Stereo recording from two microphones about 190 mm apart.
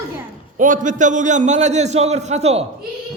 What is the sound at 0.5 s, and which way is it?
A man's voice, 45° right (ahead or behind).